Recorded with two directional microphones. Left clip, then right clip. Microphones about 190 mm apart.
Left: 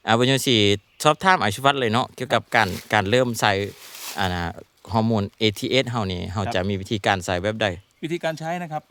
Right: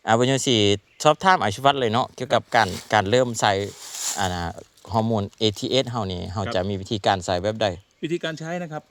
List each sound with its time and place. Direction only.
0.0 s speech: 15° left (ahead or behind)